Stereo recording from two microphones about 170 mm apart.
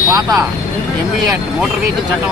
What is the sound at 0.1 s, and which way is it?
Speech, 20° right (ahead or behind).